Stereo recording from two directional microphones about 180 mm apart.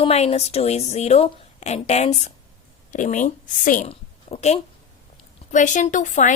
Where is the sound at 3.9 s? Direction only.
35° left (ahead or behind).